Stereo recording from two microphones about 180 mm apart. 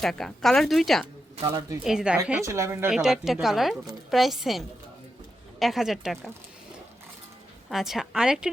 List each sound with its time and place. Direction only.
0.0 s a woman's voice: centre (ahead or behind)
1.5 s speech: 20° right (ahead or behind)
1.8 s a woman's voice: 5° right (ahead or behind)
2.4 s speech: 15° right (ahead or behind)
2.9 s a woman's voice: 5° right (ahead or behind)
7.7 s a woman's voice: centre (ahead or behind)